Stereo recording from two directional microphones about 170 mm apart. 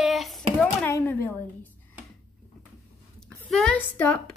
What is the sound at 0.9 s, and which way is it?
Speech, 15° left (ahead or behind).